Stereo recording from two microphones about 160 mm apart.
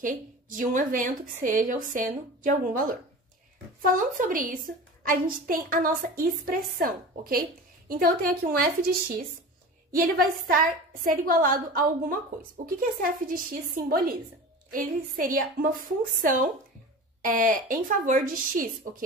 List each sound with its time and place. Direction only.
0.0 s a woman's voice: 55° right (ahead or behind)